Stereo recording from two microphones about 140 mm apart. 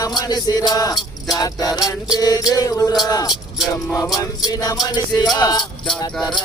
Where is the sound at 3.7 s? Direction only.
25° left (ahead or behind).